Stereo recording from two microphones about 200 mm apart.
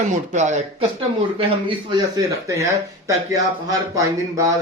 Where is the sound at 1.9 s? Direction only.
20° right (ahead or behind).